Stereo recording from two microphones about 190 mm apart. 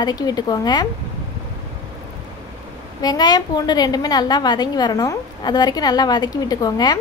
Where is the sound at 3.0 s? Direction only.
20° left (ahead or behind).